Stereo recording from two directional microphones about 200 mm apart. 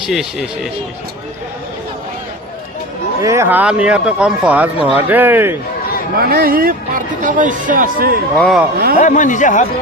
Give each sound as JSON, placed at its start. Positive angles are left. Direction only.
{"t": 0.0, "sound": "speech", "side_deg": 0}
{"t": 3.2, "sound": "speech", "side_deg": -15}
{"t": 6.1, "sound": "speech", "side_deg": -50}
{"t": 8.4, "sound": "speech", "side_deg": 0}
{"t": 9.0, "sound": "speech", "side_deg": 40}